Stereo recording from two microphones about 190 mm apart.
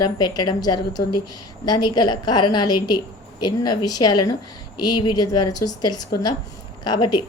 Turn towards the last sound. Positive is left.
turn(degrees=20)  # may be behind; listen again after turning